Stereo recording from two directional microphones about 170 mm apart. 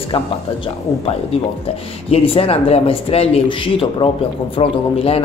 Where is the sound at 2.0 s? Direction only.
35° left (ahead or behind).